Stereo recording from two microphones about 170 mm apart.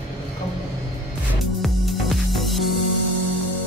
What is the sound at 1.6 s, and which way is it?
Music, centre (ahead or behind).